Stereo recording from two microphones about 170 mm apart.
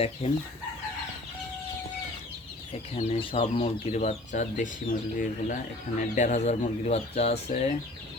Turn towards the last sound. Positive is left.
turn(degrees=40)  # may be behind; listen again after turning